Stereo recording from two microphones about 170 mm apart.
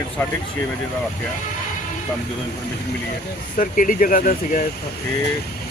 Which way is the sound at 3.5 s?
50° left (ahead or behind).